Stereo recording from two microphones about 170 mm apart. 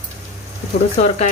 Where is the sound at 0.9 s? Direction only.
40° left (ahead or behind).